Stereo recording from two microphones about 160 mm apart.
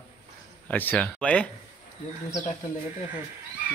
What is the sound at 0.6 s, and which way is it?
Speech, 10° left (ahead or behind).